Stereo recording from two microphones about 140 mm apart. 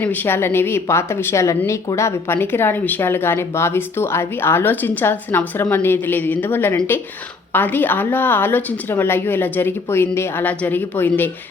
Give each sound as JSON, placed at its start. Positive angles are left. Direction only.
{"t": 0.0, "sound": "a woman's voice", "side_deg": 15}